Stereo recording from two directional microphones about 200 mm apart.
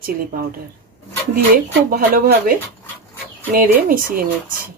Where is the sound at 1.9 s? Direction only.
45° right (ahead or behind).